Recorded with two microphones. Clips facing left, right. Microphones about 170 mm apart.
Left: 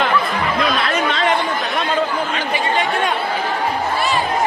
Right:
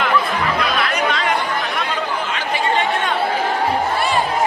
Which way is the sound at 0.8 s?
30° left (ahead or behind).